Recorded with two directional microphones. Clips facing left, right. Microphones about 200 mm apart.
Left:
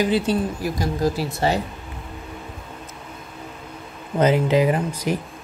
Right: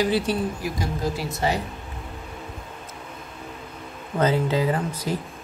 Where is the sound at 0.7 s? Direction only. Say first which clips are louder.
Left 5 dB; 35° left (ahead or behind).